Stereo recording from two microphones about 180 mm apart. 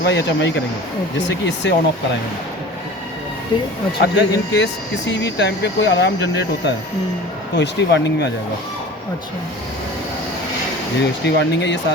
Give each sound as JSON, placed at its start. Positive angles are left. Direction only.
{"t": 0.0, "sound": "speech", "side_deg": 70}
{"t": 1.6, "sound": "speech", "side_deg": 75}
{"t": 4.0, "sound": "speech", "side_deg": 75}
{"t": 11.0, "sound": "speech", "side_deg": 70}